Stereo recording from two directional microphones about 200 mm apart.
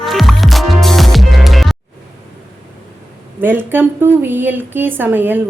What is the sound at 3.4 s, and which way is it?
A woman's voice, 10° right (ahead or behind).